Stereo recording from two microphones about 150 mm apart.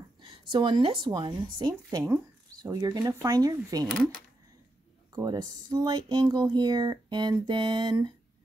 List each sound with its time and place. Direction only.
0.2 s a sound: 30° right (ahead or behind)
1.0 s speech: 30° right (ahead or behind)
3.8 s speech: 5° left (ahead or behind)
5.1 s speech: 25° right (ahead or behind)